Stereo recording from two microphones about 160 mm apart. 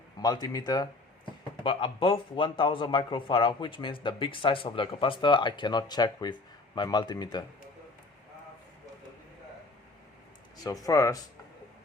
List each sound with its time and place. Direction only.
0.2 s a man's voice: 25° left (ahead or behind)
10.8 s speech: 20° left (ahead or behind)